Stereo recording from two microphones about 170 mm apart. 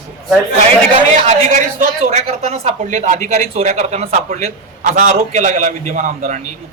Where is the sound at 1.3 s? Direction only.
45° right (ahead or behind).